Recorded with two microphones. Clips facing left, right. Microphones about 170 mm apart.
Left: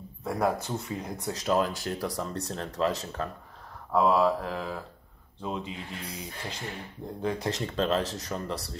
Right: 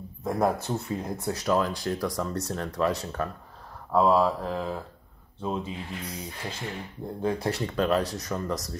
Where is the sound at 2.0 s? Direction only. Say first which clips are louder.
Right 3 dB; 40° right (ahead or behind).